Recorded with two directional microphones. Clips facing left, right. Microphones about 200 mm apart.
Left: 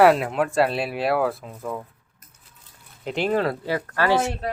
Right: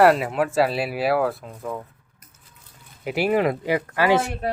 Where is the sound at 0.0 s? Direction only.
Centre (ahead or behind).